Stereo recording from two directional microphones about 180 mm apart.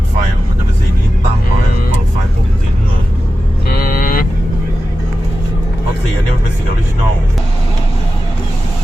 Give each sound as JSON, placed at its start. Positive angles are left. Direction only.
{"t": 3.7, "sound": "vehicle", "side_deg": 55}